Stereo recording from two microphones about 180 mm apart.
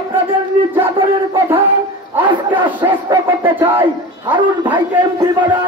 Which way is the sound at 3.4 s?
10° right (ahead or behind).